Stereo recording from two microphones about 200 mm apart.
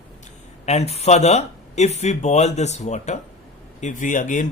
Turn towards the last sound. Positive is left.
turn(degrees=40)  # may be behind; listen again after turning